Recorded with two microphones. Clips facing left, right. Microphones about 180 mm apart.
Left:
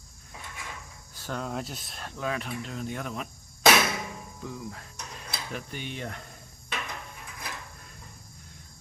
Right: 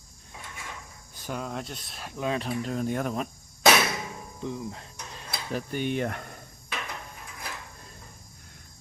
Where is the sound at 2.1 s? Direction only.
20° right (ahead or behind).